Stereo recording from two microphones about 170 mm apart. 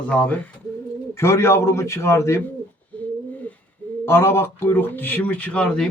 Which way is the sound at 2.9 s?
10° left (ahead or behind).